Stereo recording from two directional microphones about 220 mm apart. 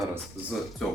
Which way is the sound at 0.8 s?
5° left (ahead or behind).